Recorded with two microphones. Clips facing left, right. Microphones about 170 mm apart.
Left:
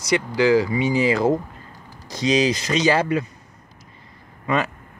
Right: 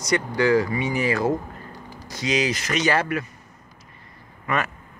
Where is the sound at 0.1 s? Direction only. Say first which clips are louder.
Left 2 dB; 90° left.